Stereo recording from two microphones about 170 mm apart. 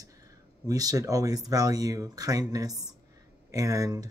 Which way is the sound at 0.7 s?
20° right (ahead or behind).